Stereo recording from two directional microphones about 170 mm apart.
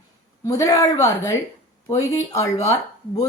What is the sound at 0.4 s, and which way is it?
A woman's voice, 20° left (ahead or behind).